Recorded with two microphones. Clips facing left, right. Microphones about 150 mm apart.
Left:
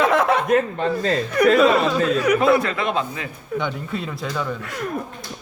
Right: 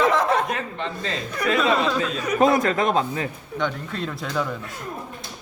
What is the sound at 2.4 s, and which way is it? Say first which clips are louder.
Speech: even; 40° right (ahead or behind).